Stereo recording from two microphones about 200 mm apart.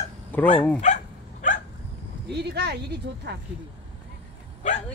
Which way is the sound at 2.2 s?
55° right (ahead or behind).